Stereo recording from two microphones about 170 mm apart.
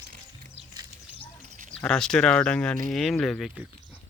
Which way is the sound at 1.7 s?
5° left (ahead or behind).